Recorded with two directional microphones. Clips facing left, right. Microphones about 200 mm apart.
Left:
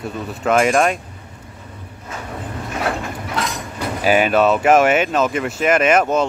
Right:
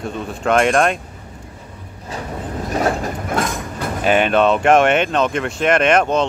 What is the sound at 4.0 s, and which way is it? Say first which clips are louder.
Speech: even; 5° left (ahead or behind).